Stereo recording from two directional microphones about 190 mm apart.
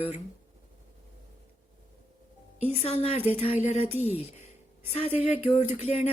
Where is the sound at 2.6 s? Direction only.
30° left (ahead or behind).